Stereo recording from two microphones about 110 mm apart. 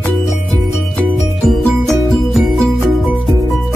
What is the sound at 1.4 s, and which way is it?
Music, centre (ahead or behind).